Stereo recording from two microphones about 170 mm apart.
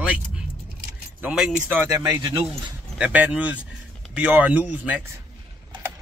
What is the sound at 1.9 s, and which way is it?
Speech, 20° right (ahead or behind).